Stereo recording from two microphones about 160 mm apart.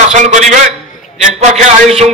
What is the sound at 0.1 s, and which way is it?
A man's voice, 50° right (ahead or behind).